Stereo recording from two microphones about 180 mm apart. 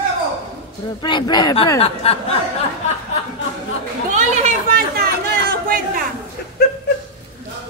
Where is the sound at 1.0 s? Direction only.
25° left (ahead or behind).